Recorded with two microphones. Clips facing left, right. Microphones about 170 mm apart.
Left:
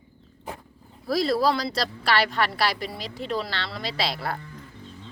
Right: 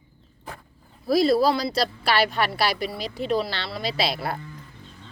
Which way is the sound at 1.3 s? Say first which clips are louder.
Right 3 dB; 5° right (ahead or behind).